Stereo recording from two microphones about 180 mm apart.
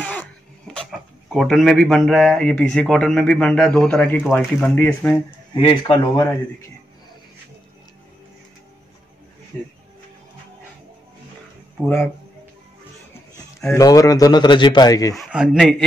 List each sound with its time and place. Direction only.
0.0 s a sound: 10° left (ahead or behind)
1.3 s speech: centre (ahead or behind)
5.6 s speech: 25° left (ahead or behind)
11.8 s speech: 15° left (ahead or behind)
13.7 s speech: 20° left (ahead or behind)
15.1 s speech: centre (ahead or behind)